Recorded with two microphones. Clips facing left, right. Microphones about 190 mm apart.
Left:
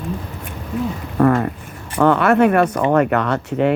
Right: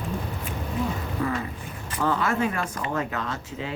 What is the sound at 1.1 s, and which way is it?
Speech, 65° left (ahead or behind).